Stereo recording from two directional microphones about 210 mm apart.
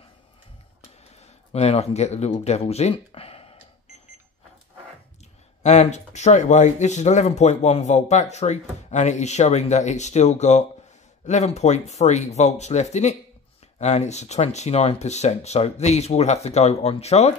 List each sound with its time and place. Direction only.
1.2 s speech: 30° left (ahead or behind)
5.6 s speech: 35° left (ahead or behind)